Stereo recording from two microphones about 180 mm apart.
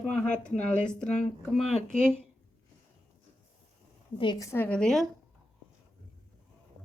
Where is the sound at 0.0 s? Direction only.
5° left (ahead or behind).